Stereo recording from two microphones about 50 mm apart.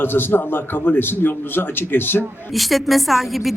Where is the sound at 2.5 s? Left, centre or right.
Centre.